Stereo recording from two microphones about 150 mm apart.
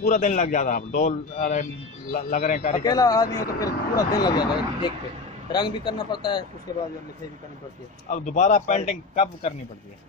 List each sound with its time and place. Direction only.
0.0 s a man's voice: 50° left (ahead or behind)
2.8 s a man's voice: 25° left (ahead or behind)
8.1 s a man's voice: 50° left (ahead or behind)